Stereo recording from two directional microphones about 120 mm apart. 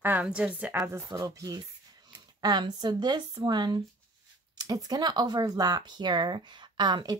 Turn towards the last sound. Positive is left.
turn(degrees=-40)  # may be behind; listen again after turning